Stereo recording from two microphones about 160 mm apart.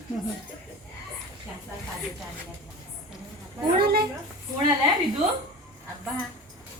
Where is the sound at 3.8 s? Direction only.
75° right (ahead or behind).